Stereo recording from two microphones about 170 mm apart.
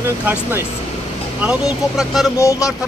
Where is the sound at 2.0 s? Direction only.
Centre (ahead or behind).